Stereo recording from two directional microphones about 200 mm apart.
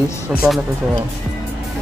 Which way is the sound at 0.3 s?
5° right (ahead or behind).